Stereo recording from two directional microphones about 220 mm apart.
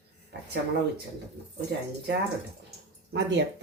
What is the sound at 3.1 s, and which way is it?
Speech, 55° right (ahead or behind).